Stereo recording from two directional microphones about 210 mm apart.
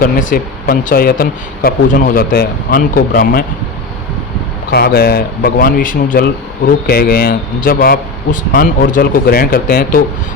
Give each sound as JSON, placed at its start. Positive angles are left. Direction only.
{"t": 0.0, "sound": "speech", "side_deg": 40}
{"t": 4.7, "sound": "speech", "side_deg": 50}